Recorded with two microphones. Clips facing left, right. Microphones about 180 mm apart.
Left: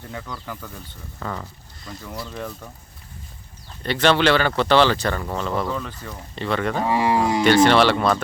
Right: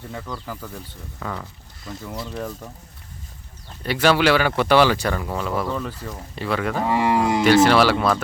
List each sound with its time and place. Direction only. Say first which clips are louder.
0.1 s speech: right 1 dB; 5° right (ahead or behind)
3.8 s speech: even; 5° right (ahead or behind)
6.8 s speech: right 1 dB; 20° right (ahead or behind)
7.4 s speech: even; 5° right (ahead or behind)